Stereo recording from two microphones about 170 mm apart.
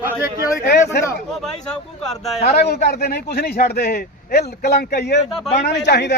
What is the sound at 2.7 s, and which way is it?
A woman's voice, 65° left (ahead or behind).